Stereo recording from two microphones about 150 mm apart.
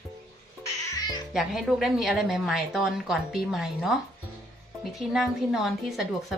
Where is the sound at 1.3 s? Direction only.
5° right (ahead or behind).